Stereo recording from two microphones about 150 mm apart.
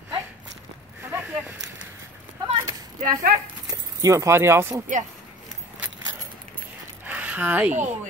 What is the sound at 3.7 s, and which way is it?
Speech, 20° right (ahead or behind).